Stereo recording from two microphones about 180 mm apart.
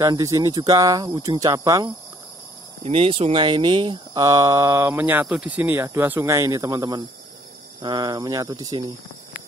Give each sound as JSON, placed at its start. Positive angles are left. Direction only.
{"t": 0.0, "sound": "speech", "side_deg": -15}
{"t": 2.8, "sound": "speech", "side_deg": -30}